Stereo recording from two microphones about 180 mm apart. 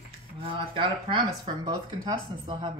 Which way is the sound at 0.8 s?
30° right (ahead or behind).